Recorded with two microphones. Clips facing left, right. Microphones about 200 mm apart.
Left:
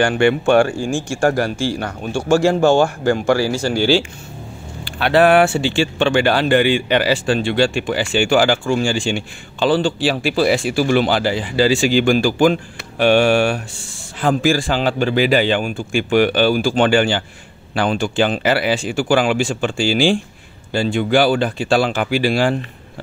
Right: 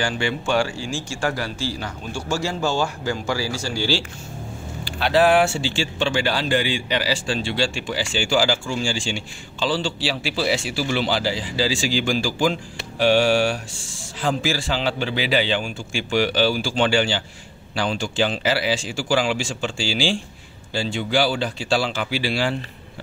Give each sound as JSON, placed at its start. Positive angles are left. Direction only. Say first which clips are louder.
{"t": 0.0, "sound": "speech", "louder": "left 10 dB", "side_deg": 60}